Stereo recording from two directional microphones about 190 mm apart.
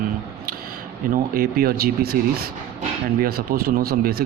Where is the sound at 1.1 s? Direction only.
50° right (ahead or behind).